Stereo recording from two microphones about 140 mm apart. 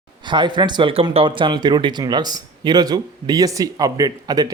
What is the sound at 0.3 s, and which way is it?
Speech, 35° right (ahead or behind).